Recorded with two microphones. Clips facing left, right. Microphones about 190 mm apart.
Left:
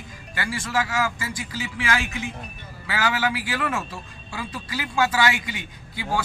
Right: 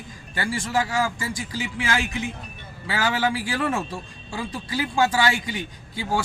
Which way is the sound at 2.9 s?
30° right (ahead or behind).